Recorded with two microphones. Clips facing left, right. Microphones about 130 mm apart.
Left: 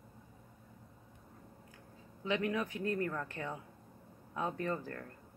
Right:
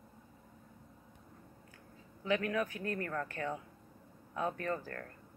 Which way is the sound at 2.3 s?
20° left (ahead or behind).